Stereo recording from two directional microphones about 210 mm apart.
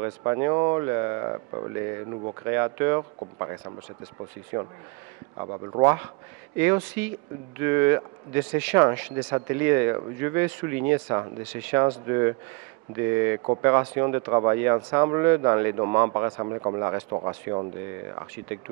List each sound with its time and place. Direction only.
0.0 s speech: 15° right (ahead or behind)
5.4 s speech: 25° right (ahead or behind)
6.6 s speech: 10° right (ahead or behind)